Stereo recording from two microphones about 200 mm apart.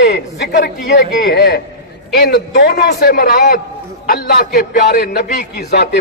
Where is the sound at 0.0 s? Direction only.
55° left (ahead or behind).